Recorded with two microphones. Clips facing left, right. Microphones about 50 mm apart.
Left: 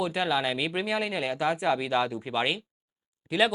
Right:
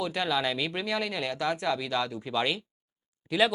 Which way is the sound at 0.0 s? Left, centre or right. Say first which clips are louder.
Left 2 dB; centre.